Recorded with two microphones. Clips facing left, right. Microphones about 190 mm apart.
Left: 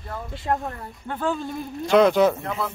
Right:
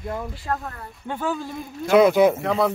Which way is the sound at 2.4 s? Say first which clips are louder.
Right 8 dB; 80° right.